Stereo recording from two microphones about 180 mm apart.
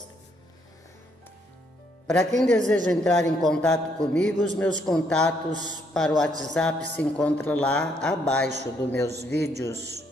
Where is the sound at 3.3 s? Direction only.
5° left (ahead or behind).